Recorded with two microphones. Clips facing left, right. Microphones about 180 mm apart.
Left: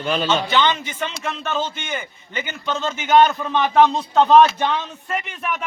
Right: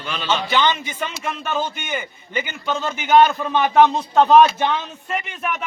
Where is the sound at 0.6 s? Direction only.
10° right (ahead or behind).